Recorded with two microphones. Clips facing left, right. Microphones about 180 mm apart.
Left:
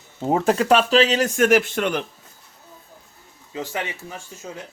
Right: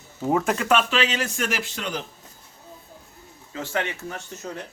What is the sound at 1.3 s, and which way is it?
Speech, 50° left (ahead or behind).